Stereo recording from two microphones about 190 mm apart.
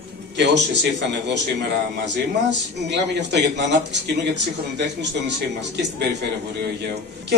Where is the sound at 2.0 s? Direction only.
65° right (ahead or behind).